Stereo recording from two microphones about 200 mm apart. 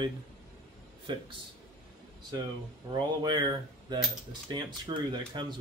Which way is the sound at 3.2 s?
20° right (ahead or behind).